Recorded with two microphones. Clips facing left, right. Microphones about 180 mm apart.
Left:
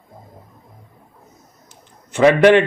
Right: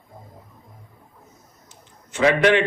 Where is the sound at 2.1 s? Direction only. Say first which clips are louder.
Left 6 dB; 55° left (ahead or behind).